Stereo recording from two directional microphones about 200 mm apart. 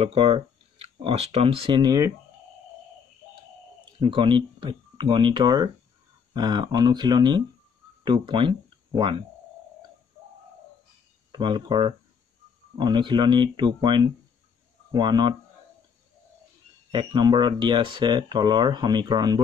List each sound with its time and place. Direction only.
0.0 s speech: 30° right (ahead or behind)
3.8 s speech: 25° right (ahead or behind)
11.3 s speech: 20° right (ahead or behind)
16.9 s speech: 20° right (ahead or behind)